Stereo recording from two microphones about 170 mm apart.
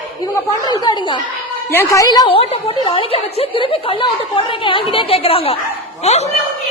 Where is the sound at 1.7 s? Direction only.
15° left (ahead or behind); by 6.2 s 40° left (ahead or behind).